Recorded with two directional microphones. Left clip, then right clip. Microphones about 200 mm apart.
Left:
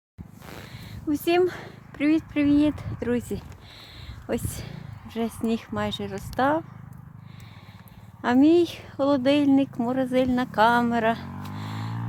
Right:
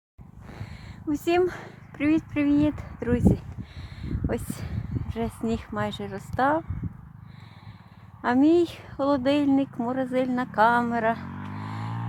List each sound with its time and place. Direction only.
0.4 s a sound: 30° left (ahead or behind)
1.1 s speech: 5° left (ahead or behind)
8.2 s speech: 5° left (ahead or behind)
11.7 s music: 55° right (ahead or behind)